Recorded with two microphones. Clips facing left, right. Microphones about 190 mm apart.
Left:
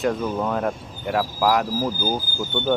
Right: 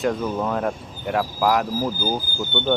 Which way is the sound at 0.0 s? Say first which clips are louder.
Even; centre (ahead or behind).